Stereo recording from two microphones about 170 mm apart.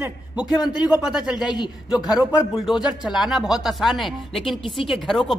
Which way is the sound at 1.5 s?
25° left (ahead or behind).